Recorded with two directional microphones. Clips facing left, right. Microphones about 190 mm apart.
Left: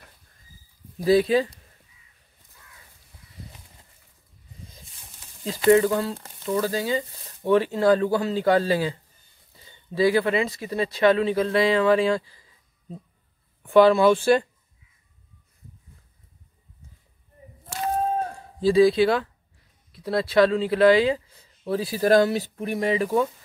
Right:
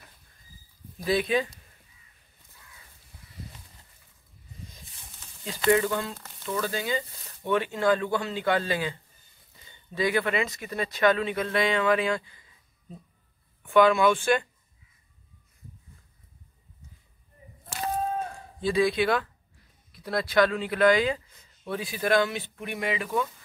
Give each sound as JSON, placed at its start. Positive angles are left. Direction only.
{"t": 1.0, "sound": "speech", "side_deg": 35}
{"t": 5.7, "sound": "speech", "side_deg": 30}
{"t": 9.9, "sound": "speech", "side_deg": 30}
{"t": 13.6, "sound": "speech", "side_deg": 35}
{"t": 18.6, "sound": "speech", "side_deg": 30}